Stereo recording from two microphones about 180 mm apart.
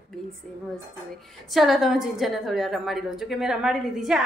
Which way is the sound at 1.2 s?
Centre (ahead or behind).